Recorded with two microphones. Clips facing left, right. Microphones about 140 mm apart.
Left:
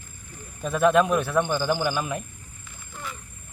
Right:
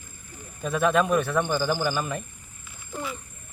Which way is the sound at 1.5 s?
10° right (ahead or behind).